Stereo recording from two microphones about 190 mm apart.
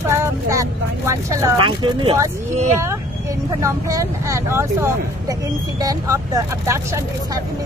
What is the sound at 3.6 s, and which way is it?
Speech, 15° right (ahead or behind).